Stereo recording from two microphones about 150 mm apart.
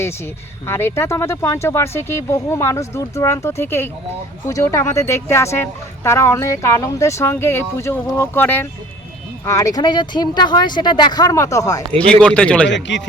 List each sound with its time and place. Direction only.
0.7 s speech: 15° left (ahead or behind)
12.2 s speech: 5° left (ahead or behind)